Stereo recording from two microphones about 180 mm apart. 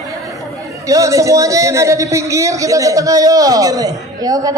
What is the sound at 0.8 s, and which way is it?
A man's voice, 20° right (ahead or behind).